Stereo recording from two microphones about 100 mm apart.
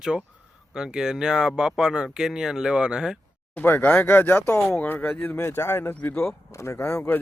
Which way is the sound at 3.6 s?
20° left (ahead or behind).